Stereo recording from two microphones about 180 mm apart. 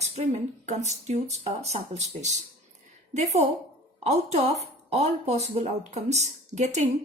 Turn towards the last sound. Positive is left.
turn(degrees=-40)  # may be behind; listen again after turning